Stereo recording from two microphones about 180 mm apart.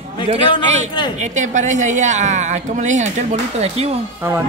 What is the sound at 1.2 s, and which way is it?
A woman's voice, 40° right (ahead or behind).